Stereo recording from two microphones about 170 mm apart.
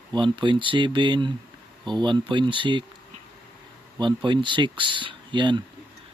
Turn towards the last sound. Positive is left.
turn(degrees=-25)  # may be behind; listen again after turning